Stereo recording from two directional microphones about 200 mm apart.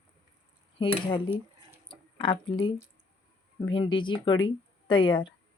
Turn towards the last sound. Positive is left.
turn(degrees=25)  # may be behind; listen again after turning